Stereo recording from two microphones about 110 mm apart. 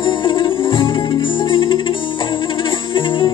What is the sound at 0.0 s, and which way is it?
Music, 50° left (ahead or behind).